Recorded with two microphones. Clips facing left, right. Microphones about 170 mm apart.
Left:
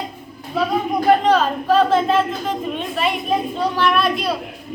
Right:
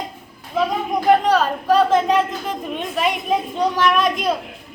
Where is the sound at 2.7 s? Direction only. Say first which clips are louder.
Even; 15° right (ahead or behind).